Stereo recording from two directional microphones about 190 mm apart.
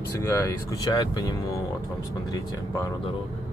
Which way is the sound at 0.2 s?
20° left (ahead or behind).